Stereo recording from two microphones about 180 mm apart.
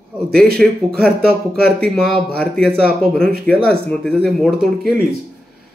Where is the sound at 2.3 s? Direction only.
5° left (ahead or behind).